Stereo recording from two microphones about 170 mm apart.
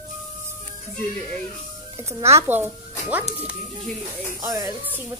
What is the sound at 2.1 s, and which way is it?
A woman's voice, 15° right (ahead or behind).